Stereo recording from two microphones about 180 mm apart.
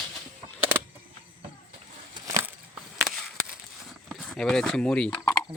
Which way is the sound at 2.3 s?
15° right (ahead or behind).